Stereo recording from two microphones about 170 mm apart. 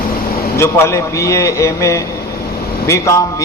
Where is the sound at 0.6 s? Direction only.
15° left (ahead or behind).